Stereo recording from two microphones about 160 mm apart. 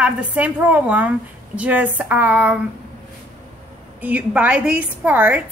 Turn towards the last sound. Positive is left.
turn(degrees=-10)  # may be behind; listen again after turning